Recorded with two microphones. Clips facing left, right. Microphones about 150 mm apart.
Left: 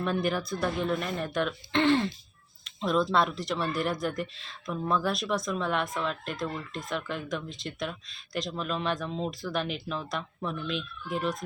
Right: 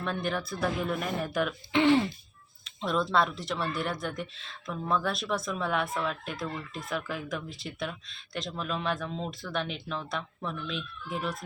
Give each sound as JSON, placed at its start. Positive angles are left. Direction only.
{"t": 0.0, "sound": "speech", "side_deg": 0}